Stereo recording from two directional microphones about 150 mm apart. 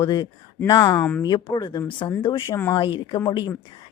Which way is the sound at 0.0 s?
30° left (ahead or behind).